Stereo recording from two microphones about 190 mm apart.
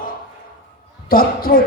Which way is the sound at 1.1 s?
50° left (ahead or behind).